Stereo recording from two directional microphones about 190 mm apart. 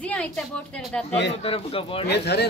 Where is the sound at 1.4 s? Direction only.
30° left (ahead or behind).